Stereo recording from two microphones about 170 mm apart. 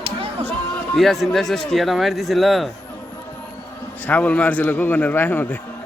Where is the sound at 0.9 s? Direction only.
Centre (ahead or behind).